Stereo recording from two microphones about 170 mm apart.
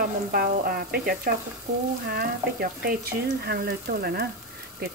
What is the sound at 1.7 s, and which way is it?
Frying, 45° right (ahead or behind).